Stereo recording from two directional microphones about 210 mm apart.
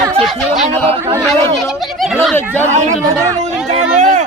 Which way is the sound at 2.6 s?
35° right (ahead or behind).